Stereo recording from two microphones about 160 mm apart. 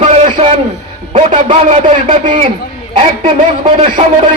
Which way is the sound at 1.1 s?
45° right (ahead or behind).